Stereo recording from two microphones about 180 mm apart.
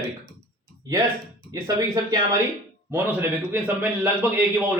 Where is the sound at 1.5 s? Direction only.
20° right (ahead or behind).